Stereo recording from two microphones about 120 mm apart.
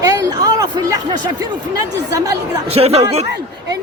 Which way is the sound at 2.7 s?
60° right (ahead or behind).